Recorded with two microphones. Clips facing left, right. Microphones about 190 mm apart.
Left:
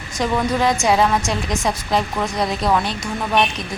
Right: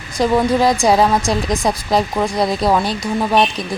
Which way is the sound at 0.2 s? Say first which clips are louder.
Right 5 dB; 35° right (ahead or behind).